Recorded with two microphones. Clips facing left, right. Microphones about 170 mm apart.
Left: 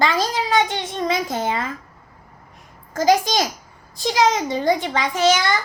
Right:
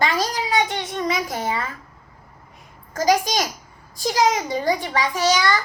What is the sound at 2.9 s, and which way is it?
A child's voice, 25° left (ahead or behind).